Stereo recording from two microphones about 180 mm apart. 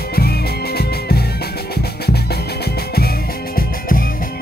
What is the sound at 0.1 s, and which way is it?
Music, 60° left (ahead or behind).